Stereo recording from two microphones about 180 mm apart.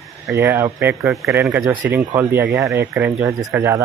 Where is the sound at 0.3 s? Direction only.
15° right (ahead or behind).